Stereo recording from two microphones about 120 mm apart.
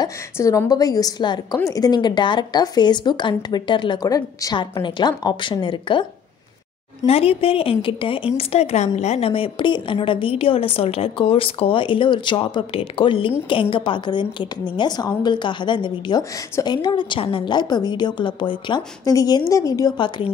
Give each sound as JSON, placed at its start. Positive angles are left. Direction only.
{"t": 0.4, "sound": "a woman's voice", "side_deg": 25}
{"t": 7.1, "sound": "a woman's voice", "side_deg": 55}
{"t": 16.7, "sound": "a woman's voice", "side_deg": 40}
{"t": 19.0, "sound": "speech", "side_deg": 30}